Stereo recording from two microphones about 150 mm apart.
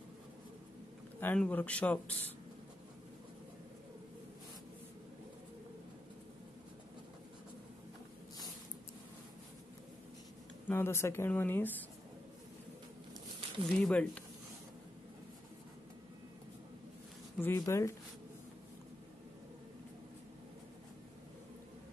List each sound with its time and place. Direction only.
1.2 s speech: 10° left (ahead or behind)
10.7 s speech: 15° left (ahead or behind)
13.7 s speech: 5° left (ahead or behind)
17.4 s speech: 20° left (ahead or behind)